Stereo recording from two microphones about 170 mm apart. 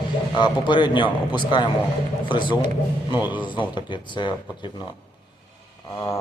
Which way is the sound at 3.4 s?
30° left (ahead or behind).